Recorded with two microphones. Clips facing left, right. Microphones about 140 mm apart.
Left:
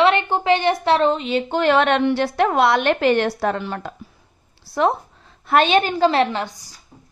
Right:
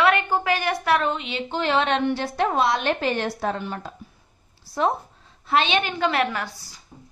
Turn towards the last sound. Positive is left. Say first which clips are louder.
# left 3 dB
turn(degrees=15)  # may be behind; listen again after turning